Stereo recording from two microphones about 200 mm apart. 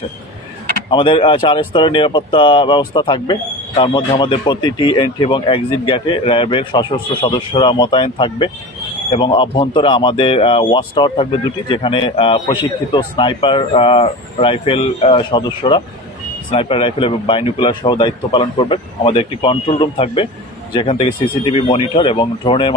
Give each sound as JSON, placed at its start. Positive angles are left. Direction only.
{"t": 0.9, "sound": "speech", "side_deg": 25}